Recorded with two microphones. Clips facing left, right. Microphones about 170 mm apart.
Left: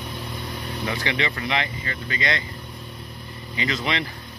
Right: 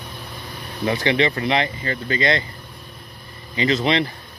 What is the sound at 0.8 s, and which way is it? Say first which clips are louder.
Speech: right 8 dB; 30° right (ahead or behind).